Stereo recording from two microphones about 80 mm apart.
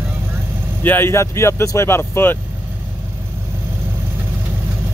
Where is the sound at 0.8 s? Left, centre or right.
Left.